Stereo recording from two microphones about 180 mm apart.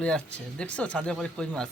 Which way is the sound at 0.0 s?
5° left (ahead or behind).